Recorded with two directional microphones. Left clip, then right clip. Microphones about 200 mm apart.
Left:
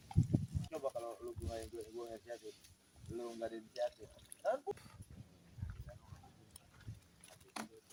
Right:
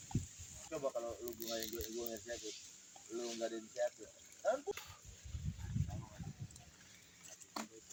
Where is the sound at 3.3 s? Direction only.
30° right (ahead or behind).